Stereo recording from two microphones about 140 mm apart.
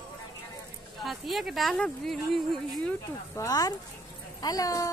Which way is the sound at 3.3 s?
25° left (ahead or behind).